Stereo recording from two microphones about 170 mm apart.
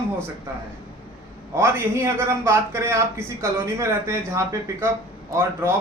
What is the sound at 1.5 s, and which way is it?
A man's voice, 15° right (ahead or behind).